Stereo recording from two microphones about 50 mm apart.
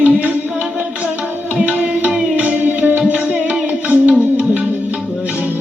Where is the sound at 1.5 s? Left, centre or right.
Right.